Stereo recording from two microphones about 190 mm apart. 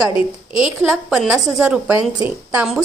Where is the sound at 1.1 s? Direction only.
Centre (ahead or behind).